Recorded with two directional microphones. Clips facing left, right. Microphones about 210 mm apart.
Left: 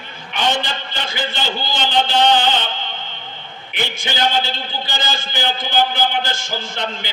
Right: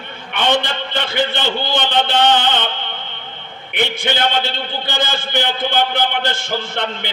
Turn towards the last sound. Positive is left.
turn(degrees=-60)  # may be behind; listen again after turning